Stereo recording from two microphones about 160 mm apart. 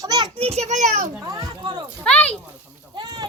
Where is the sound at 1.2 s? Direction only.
20° right (ahead or behind).